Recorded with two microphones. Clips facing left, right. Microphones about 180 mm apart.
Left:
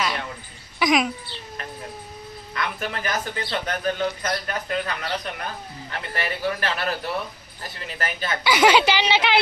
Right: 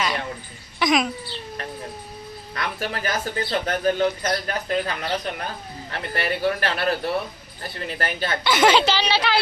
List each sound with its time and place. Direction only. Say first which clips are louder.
0.8 s a sound: even; 10° left (ahead or behind)
2.6 s speech: right 1 dB; 35° right (ahead or behind)
8.4 s a woman's voice: left 1 dB; 10° left (ahead or behind)